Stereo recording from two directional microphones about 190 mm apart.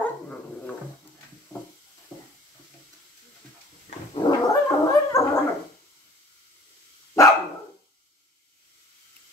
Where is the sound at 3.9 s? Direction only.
40° left (ahead or behind).